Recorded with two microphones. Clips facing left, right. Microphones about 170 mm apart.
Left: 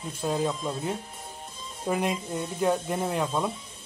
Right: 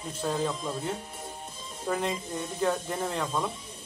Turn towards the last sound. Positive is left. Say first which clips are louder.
# left 3 dB
turn(degrees=10)  # may be behind; listen again after turning